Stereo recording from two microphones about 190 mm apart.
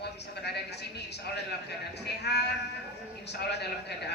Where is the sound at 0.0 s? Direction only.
60° left (ahead or behind).